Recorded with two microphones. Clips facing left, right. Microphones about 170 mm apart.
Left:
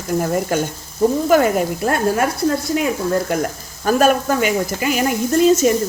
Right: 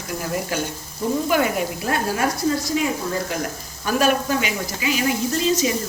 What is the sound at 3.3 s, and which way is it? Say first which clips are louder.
Speech: left 6 dB; 50° left (ahead or behind).